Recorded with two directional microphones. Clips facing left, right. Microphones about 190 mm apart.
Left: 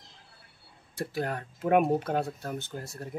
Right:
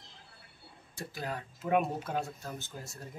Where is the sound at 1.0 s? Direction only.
60° left (ahead or behind).